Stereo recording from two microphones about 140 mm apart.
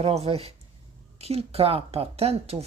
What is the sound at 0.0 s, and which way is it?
Speech, 45° right (ahead or behind).